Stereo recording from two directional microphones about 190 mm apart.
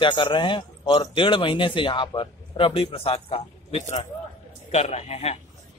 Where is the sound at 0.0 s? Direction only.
25° left (ahead or behind).